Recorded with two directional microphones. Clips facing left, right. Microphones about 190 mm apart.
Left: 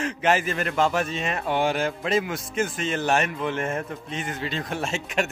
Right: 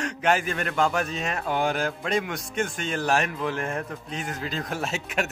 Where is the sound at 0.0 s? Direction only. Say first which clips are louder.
Left 1 dB; centre (ahead or behind).